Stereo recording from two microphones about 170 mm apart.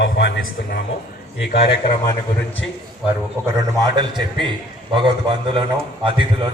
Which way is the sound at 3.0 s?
15° right (ahead or behind).